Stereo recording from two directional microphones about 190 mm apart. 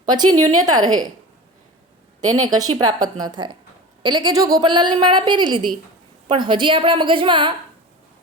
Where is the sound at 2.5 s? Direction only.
20° right (ahead or behind).